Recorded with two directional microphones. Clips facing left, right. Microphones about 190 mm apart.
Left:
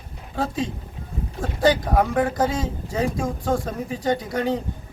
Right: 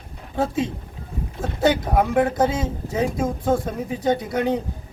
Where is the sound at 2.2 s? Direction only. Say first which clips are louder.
Right 2 dB; 25° right (ahead or behind).